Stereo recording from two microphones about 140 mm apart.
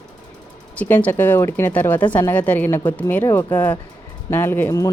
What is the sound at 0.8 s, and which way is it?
Speech, 10° left (ahead or behind).